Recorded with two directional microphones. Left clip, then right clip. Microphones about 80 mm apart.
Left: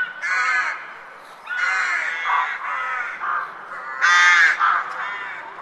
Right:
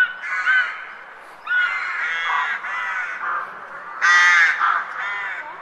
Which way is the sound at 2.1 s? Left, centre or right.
Right.